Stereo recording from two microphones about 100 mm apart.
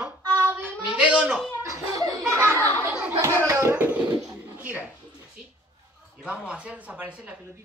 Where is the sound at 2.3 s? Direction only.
25° right (ahead or behind).